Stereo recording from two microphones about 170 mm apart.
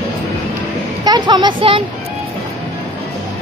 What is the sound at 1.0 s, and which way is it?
Speech, 25° right (ahead or behind).